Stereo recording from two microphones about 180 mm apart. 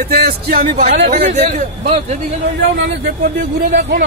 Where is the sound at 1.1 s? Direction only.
35° right (ahead or behind).